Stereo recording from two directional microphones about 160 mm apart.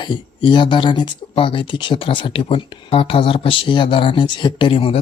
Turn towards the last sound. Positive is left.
turn(degrees=35)  # may be behind; listen again after turning